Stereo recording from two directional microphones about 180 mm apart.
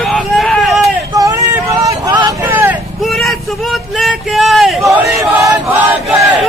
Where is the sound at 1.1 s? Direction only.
15° right (ahead or behind).